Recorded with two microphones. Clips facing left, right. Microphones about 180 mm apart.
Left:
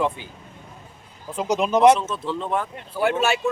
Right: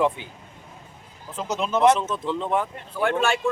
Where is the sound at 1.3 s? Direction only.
15° left (ahead or behind).